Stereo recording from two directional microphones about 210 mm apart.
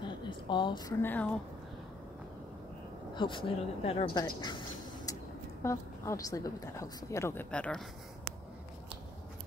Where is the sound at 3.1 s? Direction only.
20° left (ahead or behind); by 7.8 s 5° left (ahead or behind).